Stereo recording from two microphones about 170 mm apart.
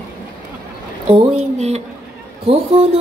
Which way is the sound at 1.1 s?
35° right (ahead or behind).